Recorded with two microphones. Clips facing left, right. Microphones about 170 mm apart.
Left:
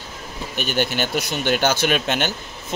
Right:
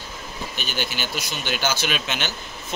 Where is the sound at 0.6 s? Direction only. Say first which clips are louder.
Left 8 dB; 55° left (ahead or behind).